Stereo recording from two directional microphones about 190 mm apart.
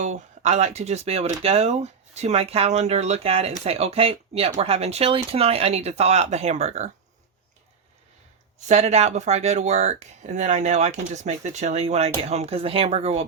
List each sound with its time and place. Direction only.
0.0 s speech: 35° right (ahead or behind)
8.5 s speech: 35° right (ahead or behind)